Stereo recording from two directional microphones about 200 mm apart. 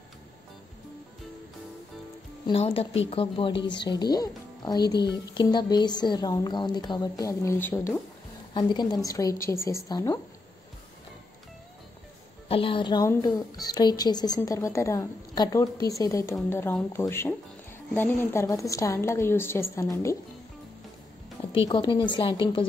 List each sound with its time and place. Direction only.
2.4 s a woman's voice: 30° left (ahead or behind)
4.9 s speech: 55° left (ahead or behind)
5.2 s a woman's voice: 20° left (ahead or behind)
12.4 s a woman's voice: 25° left (ahead or behind)
21.5 s a woman's voice: 25° left (ahead or behind)